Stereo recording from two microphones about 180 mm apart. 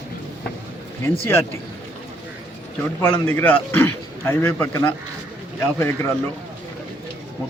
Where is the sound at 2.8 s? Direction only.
10° left (ahead or behind).